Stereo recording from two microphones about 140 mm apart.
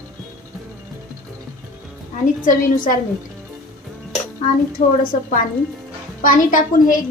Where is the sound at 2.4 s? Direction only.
80° left.